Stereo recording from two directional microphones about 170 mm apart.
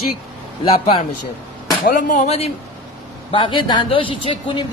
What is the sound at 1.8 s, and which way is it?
Speech, 50° left (ahead or behind).